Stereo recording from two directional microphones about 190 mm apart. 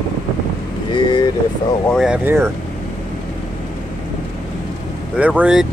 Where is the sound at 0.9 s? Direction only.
25° left (ahead or behind).